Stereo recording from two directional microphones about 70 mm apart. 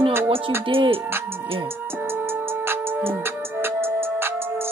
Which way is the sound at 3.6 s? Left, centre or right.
Right.